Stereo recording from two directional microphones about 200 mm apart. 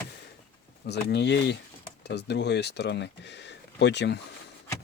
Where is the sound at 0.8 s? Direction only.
60° left (ahead or behind).